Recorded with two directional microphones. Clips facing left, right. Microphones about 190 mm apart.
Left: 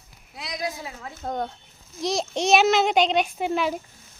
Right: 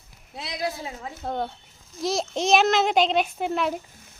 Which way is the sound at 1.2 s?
5° right (ahead or behind).